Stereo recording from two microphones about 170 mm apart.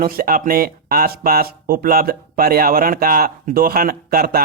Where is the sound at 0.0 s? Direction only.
55° right (ahead or behind).